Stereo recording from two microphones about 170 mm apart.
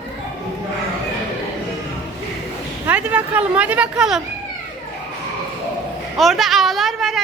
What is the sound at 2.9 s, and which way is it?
Speech, 10° right (ahead or behind).